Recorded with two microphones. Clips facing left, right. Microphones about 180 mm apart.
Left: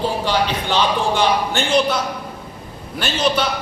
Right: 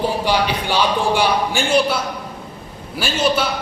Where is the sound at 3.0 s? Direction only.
10° right (ahead or behind).